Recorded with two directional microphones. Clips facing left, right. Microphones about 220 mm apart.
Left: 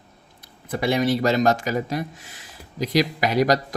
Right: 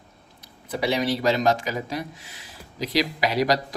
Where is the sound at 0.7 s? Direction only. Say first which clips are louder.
Left 3 dB; 50° left (ahead or behind).